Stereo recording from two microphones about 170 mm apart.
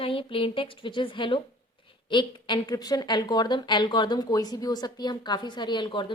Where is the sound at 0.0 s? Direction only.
30° left (ahead or behind).